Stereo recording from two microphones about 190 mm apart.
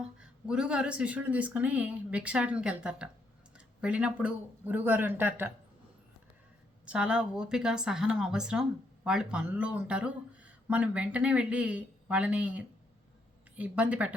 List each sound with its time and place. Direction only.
0.0 s speech: 5° right (ahead or behind)
6.8 s a woman's voice: 5° right (ahead or behind)